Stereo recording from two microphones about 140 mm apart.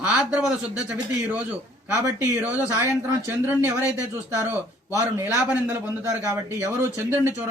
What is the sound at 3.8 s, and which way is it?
Speech, 20° left (ahead or behind).